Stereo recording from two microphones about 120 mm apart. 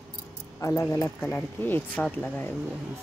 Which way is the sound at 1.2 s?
15° left (ahead or behind).